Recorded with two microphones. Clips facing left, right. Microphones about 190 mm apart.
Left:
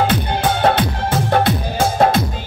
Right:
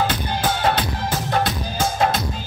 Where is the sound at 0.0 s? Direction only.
60° left (ahead or behind).